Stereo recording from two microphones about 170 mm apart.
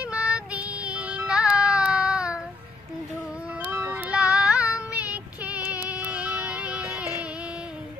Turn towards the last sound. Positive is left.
turn(degrees=-5)  # may be behind; listen again after turning